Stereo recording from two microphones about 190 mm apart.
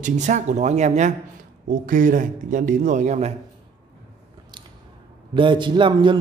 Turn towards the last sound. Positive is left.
turn(degrees=-25)  # may be behind; listen again after turning